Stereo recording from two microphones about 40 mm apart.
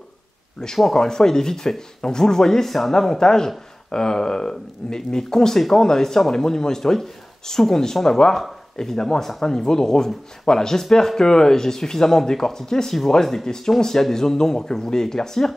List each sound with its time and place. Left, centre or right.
0.9 s speech: centre